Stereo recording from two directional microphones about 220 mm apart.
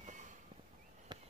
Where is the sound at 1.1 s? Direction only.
20° right (ahead or behind).